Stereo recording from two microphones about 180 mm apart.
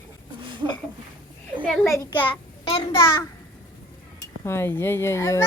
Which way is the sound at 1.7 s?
Centre (ahead or behind).